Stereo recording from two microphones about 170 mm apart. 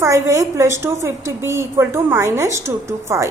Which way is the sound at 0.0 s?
20° right (ahead or behind).